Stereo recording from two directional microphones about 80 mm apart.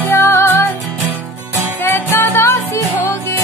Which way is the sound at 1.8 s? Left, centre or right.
Left.